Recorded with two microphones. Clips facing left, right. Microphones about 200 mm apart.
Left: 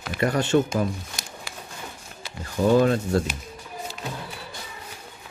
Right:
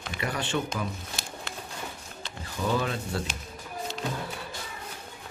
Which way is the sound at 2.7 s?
45° left (ahead or behind).